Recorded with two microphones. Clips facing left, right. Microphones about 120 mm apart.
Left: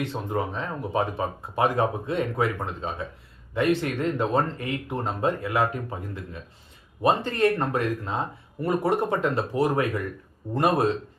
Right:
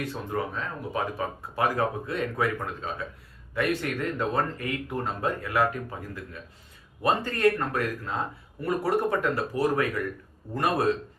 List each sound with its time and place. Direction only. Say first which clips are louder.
0.0 s speech: left 3 dB; 25° left (ahead or behind)